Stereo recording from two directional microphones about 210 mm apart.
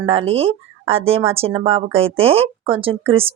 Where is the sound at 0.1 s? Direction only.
30° right (ahead or behind).